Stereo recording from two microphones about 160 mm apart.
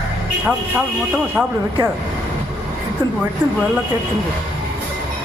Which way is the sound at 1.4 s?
10° right (ahead or behind).